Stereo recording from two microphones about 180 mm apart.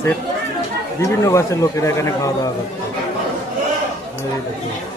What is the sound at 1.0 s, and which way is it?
Speech, 15° left (ahead or behind).